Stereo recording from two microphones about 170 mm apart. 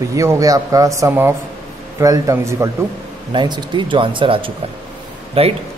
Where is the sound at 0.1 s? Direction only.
20° right (ahead or behind).